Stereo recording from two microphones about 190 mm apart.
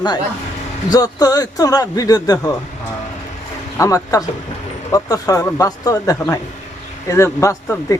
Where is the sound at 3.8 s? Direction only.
15° left (ahead or behind).